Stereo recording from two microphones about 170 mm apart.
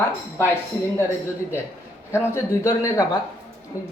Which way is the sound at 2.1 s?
15° left (ahead or behind).